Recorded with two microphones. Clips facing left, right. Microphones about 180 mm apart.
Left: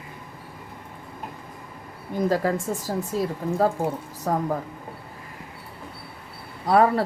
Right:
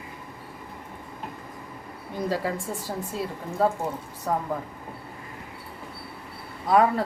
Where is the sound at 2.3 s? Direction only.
45° left (ahead or behind).